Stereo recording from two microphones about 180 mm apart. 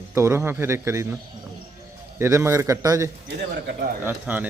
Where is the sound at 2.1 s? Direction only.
15° right (ahead or behind).